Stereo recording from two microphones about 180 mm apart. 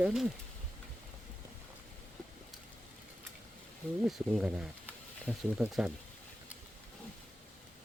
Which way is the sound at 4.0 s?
Centre (ahead or behind).